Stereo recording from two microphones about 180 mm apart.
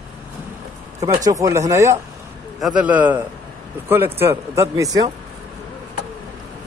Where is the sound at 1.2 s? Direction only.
20° right (ahead or behind).